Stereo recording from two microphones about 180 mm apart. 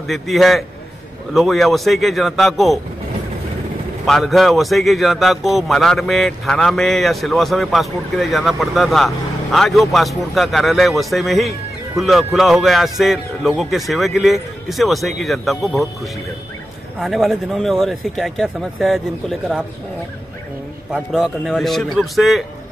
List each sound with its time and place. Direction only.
0.0 s a man's voice: centre (ahead or behind)
4.0 s a man's voice: centre (ahead or behind)
17.0 s a man's voice: centre (ahead or behind)
20.9 s a man's voice: 5° right (ahead or behind)